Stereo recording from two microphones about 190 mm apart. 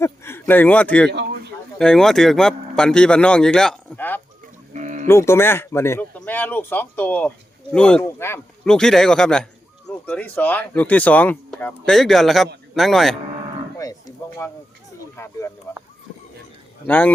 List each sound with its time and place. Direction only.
0.0 s speech: 15° left (ahead or behind)
1.1 s speech: 60° right (ahead or behind)
1.8 s speech: 5° left (ahead or behind)
4.7 s music: 40° right (ahead or behind)
5.0 s speech: 15° left (ahead or behind)
14.4 s speech: 15° left (ahead or behind)
16.8 s speech: 10° left (ahead or behind)